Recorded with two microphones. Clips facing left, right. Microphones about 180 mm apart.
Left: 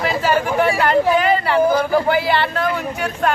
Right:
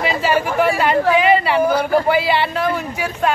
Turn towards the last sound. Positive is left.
turn(degrees=-5)  # may be behind; listen again after turning